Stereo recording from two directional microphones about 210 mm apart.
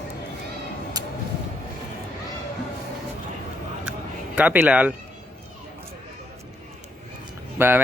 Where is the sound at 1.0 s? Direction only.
20° right (ahead or behind).